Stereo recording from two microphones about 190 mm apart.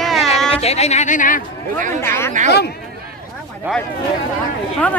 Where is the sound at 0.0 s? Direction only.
Centre (ahead or behind).